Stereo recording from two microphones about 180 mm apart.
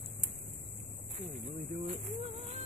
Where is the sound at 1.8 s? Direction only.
35° right (ahead or behind).